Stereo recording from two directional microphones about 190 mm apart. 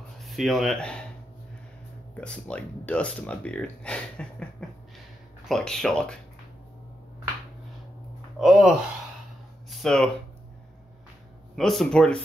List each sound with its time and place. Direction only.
0.2 s speech: centre (ahead or behind)
2.1 s speech: 5° left (ahead or behind)
8.4 s speech: centre (ahead or behind)
11.5 s speech: centre (ahead or behind)